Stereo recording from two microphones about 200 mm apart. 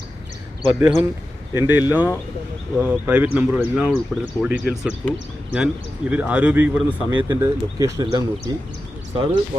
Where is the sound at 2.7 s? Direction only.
10° right (ahead or behind).